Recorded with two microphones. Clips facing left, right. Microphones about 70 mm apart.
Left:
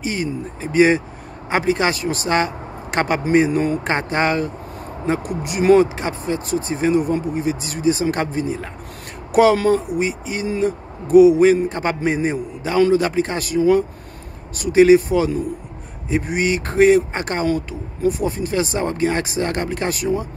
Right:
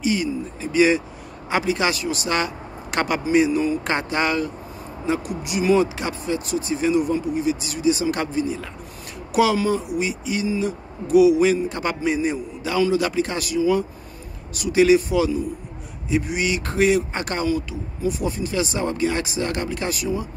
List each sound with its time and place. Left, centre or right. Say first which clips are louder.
0.0 s speech: right 1 dB; left
3.3 s speech: left 1 dB; left
3.8 s speech: left 3 dB; left
5.9 s speech: left 2 dB; left
9.9 s speech: left 2 dB; left
14.5 s speech: left 4 dB; left
17.5 s speech: left 2 dB; left